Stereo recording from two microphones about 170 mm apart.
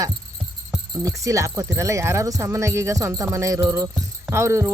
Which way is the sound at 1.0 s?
20° right (ahead or behind).